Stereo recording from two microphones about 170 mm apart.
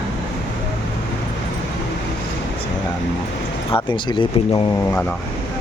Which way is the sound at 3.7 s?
25° left (ahead or behind).